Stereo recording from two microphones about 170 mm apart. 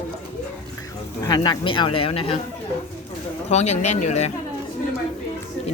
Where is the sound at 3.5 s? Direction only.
40° left (ahead or behind).